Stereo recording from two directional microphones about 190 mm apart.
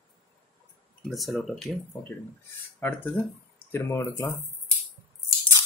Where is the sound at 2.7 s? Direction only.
10° left (ahead or behind).